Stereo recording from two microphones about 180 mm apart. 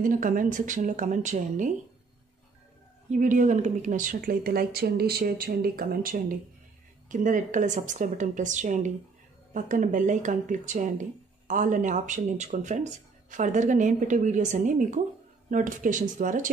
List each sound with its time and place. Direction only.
0.0 s speech: 50° right (ahead or behind)
3.1 s speech: 45° right (ahead or behind)